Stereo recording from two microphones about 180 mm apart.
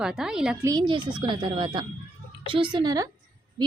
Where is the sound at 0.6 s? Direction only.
20° right (ahead or behind).